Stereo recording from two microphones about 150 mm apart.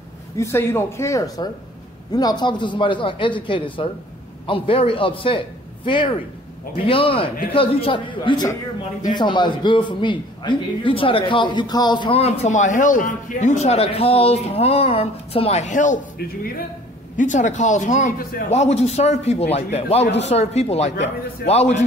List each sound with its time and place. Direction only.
0.4 s a man's voice: 15° left (ahead or behind)
12.2 s speech: 45° left (ahead or behind); by 16.6 s 75° left (ahead or behind)
17.2 s speech: 55° left (ahead or behind)
18.2 s a man's voice: 75° left (ahead or behind)
18.5 s speech: 45° left (ahead or behind)